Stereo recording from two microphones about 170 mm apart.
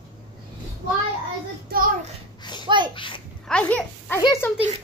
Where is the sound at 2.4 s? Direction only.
25° left (ahead or behind).